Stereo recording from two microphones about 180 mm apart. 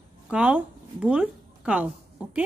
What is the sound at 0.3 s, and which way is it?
A woman's voice, 5° right (ahead or behind).